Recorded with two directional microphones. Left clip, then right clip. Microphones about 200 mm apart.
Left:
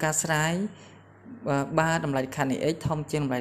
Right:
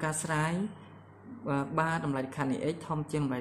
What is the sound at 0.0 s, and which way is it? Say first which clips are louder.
A man's voice: left 6 dB; 25° left (ahead or behind).